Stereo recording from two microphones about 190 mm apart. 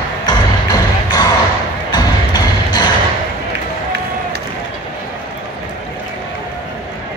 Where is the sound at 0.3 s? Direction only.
20° left (ahead or behind).